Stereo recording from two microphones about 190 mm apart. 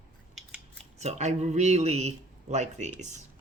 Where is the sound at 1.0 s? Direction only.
35° right (ahead or behind).